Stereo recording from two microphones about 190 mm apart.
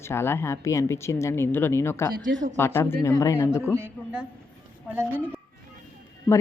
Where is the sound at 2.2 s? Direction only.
80° right.